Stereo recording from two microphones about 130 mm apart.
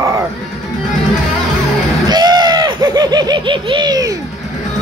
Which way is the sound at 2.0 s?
35° right (ahead or behind).